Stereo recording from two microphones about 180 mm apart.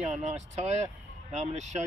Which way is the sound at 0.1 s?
35° right (ahead or behind).